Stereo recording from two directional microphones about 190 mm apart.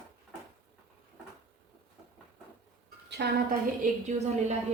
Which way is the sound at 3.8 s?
40° right (ahead or behind).